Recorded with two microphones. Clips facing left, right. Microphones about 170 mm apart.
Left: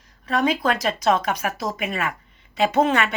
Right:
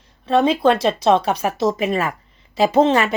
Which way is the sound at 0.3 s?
30° right (ahead or behind).